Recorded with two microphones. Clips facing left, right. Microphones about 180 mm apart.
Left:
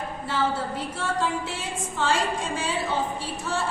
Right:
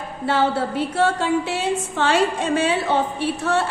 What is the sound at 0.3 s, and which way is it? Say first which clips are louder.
A woman's voice: right 7 dB; 70° right (ahead or behind).